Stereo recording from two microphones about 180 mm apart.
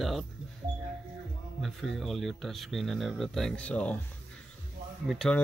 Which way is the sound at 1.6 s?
Centre (ahead or behind).